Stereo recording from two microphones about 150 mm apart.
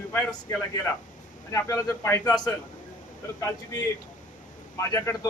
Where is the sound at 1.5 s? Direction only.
20° left (ahead or behind).